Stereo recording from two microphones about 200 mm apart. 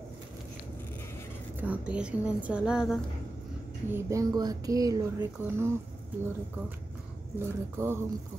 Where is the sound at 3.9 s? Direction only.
15° right (ahead or behind).